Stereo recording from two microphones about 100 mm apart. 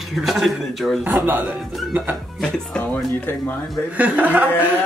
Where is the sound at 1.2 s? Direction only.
20° right (ahead or behind).